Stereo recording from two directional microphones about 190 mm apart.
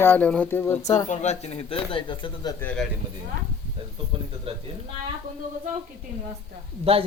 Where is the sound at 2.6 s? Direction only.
5° left (ahead or behind).